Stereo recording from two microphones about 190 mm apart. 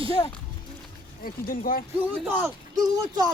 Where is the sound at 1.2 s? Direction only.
50° left (ahead or behind).